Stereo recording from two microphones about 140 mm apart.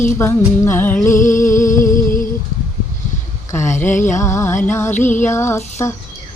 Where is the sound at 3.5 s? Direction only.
20° left (ahead or behind).